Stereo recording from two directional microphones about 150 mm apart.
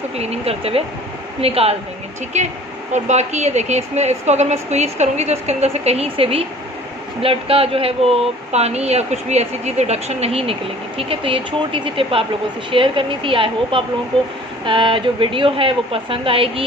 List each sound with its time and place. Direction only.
0.2 s speech: 45° right (ahead or behind)